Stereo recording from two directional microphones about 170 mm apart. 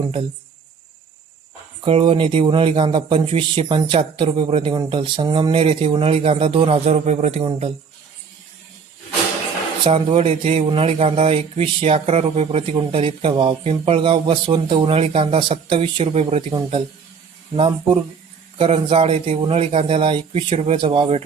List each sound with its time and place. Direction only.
1.8 s speech: 30° right (ahead or behind)
9.8 s speech: 35° right (ahead or behind)
18.5 s speech: 30° right (ahead or behind)